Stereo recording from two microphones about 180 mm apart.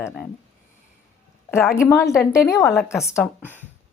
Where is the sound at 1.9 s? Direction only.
15° left (ahead or behind).